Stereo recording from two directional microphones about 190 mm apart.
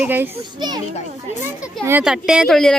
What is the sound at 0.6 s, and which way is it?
Speech, 20° right (ahead or behind).